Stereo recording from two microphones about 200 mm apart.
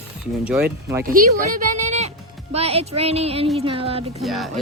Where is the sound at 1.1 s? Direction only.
45° right (ahead or behind).